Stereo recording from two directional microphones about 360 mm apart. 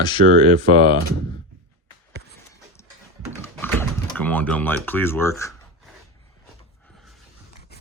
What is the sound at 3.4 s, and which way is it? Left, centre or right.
Typing, centre.